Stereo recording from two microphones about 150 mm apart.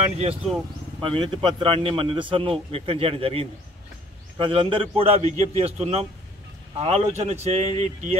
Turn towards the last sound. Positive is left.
turn(degrees=-45)  # may be behind; listen again after turning